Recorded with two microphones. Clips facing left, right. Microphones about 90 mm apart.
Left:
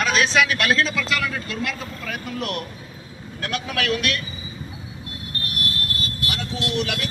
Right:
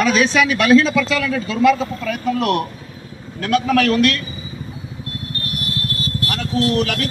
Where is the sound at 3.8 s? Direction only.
40° right (ahead or behind).